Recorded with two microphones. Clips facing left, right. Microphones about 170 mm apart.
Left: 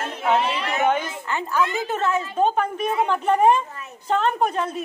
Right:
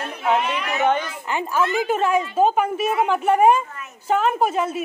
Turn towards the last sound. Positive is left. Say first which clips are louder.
# right 2 dB
turn(degrees=-5)  # may be behind; listen again after turning